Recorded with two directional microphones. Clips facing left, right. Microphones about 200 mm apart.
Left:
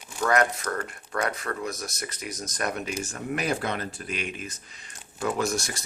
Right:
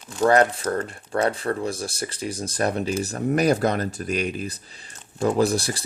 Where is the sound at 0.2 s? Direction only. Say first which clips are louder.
Right 6 dB; 30° right (ahead or behind).